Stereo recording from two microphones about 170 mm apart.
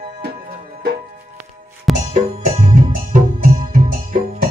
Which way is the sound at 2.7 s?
50° right (ahead or behind).